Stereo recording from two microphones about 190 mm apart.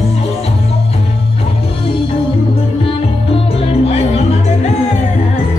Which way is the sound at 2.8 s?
30° left (ahead or behind).